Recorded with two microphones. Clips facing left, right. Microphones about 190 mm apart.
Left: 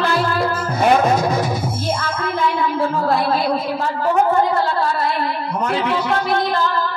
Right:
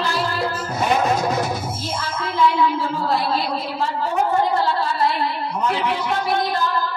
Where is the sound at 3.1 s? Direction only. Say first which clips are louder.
Left 2 dB; 55° left (ahead or behind).